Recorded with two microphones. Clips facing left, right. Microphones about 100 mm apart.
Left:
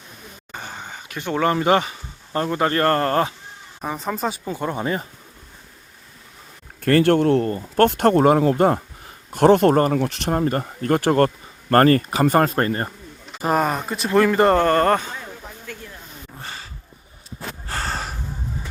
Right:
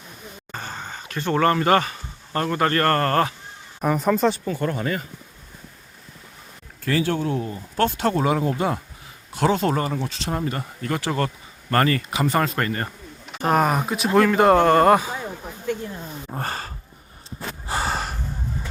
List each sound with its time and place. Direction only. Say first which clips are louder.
0.5 s speech: right 1 dB; 15° left (ahead or behind)
3.9 s speech: right 6 dB; centre (ahead or behind)
4.4 s speech: even; 20° left (ahead or behind)
6.8 s speech: left 7 dB; 55° left (ahead or behind)
10.3 s speech: left 6 dB; 40° left (ahead or behind)
13.3 s speech: right 1 dB; centre (ahead or behind)
15.6 s speech: right 13 dB; 20° right (ahead or behind)
16.3 s a sound: right 8 dB; 50° right (ahead or behind)
17.7 s gasp: right 3 dB; 15° right (ahead or behind)
17.9 s gasp: right 2 dB; centre (ahead or behind)